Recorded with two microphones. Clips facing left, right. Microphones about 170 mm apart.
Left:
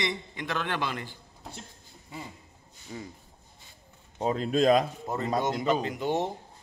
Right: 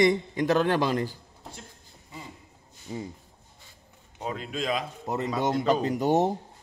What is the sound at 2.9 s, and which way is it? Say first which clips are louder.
Speech: right 5 dB; 25° right (ahead or behind).